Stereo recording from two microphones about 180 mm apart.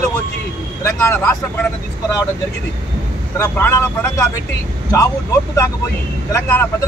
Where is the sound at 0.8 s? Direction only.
15° left (ahead or behind).